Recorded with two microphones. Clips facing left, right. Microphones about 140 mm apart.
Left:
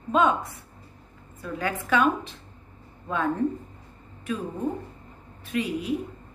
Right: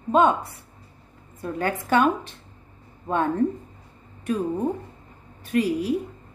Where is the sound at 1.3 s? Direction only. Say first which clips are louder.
Right 3 dB; 45° right (ahead or behind).